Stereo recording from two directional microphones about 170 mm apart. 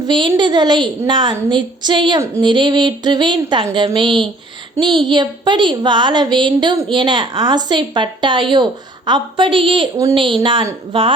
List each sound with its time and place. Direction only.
0.0 s a woman's voice: 25° right (ahead or behind)